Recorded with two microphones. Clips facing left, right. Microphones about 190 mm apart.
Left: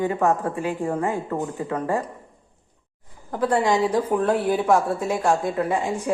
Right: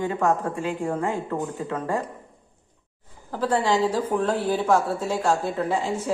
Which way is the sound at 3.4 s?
15° left (ahead or behind).